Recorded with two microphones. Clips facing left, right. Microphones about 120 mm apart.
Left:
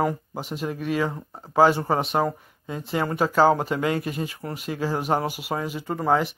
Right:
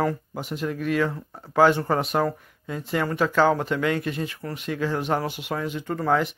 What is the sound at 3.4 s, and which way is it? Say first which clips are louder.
Speech: left 2 dB; 35° left (ahead or behind).